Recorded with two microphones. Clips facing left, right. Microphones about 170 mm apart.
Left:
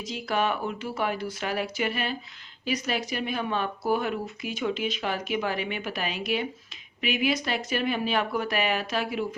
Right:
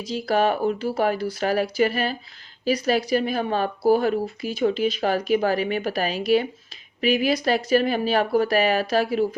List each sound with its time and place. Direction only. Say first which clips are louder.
0.0 s speech: right 6 dB; 35° right (ahead or behind)